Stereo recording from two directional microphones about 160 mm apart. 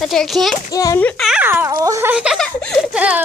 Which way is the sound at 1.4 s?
15° right (ahead or behind).